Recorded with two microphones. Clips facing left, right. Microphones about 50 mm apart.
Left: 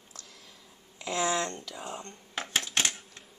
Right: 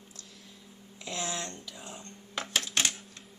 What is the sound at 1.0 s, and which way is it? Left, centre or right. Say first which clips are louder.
Speech: left 7 dB; left.